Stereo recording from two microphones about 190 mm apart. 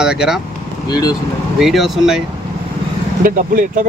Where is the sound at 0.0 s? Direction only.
5° right (ahead or behind).